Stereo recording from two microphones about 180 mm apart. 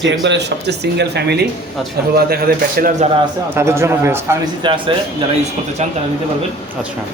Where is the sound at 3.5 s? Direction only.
15° right (ahead or behind).